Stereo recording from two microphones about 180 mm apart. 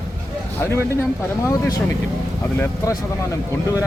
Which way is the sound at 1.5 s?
20° left (ahead or behind).